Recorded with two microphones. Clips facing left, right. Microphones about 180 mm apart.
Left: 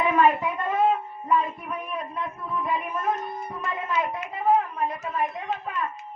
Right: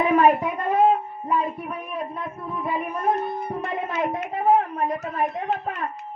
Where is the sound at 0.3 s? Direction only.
40° right (ahead or behind).